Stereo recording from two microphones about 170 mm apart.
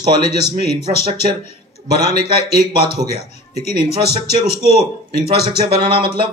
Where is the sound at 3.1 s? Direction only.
40° left (ahead or behind).